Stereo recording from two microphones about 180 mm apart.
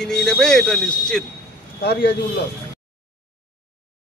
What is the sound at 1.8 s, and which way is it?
Speech, 65° left (ahead or behind).